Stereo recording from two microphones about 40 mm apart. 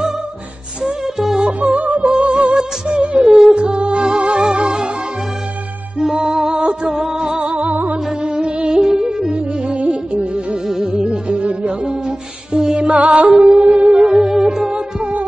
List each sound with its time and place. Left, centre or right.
0.8 s music: centre
1.7 s music: right
2.0 s music: right
3.2 s music: centre
6.1 s music: centre
7.4 s music: right
7.7 s music: right
8.4 s music: right; by 14.7 s centre